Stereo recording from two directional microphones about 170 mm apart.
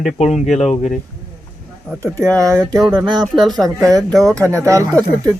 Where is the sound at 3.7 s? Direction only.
20° right (ahead or behind).